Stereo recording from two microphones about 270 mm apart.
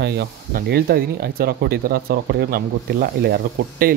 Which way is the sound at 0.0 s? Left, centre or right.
Right.